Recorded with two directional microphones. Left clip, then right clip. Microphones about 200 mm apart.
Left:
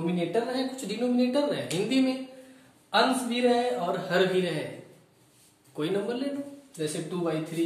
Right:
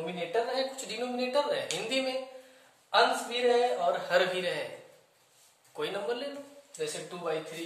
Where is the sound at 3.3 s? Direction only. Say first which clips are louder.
Left 1 dB; 10° right (ahead or behind).